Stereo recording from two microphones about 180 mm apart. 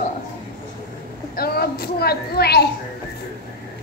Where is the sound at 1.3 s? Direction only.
60° left (ahead or behind).